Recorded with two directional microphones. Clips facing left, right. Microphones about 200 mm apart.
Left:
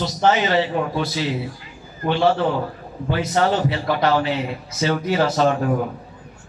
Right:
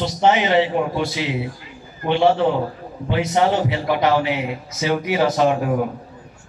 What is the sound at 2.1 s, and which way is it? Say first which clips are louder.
A man's voice: right 2 dB; 20° right (ahead or behind).